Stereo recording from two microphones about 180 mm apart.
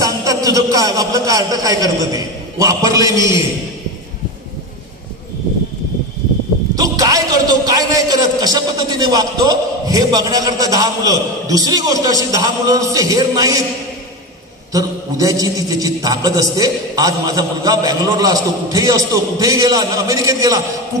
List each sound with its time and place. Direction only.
0.0 s a man's voice: 20° right (ahead or behind)
6.7 s a man's voice: 20° right (ahead or behind)
14.7 s a man's voice: 20° right (ahead or behind)